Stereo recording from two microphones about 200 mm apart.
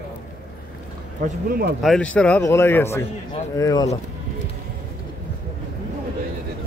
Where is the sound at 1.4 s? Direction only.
45° right (ahead or behind).